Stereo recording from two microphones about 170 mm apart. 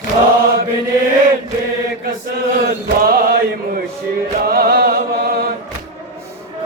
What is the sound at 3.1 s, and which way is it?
Mantra, 65° right (ahead or behind).